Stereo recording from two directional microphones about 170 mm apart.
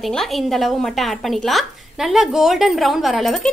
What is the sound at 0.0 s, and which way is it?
A woman's voice, centre (ahead or behind).